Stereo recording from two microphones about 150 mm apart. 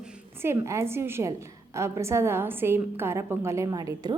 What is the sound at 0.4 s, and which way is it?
A woman's voice, 20° right (ahead or behind).